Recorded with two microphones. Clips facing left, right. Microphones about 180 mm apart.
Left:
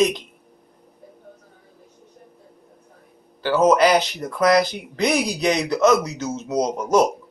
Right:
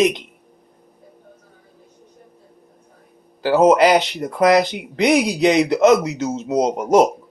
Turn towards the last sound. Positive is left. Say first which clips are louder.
# right 4 dB
turn(degrees=-25)  # may be behind; listen again after turning